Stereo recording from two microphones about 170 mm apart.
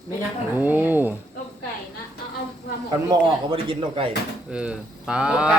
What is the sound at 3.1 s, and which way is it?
Speech, 30° right (ahead or behind).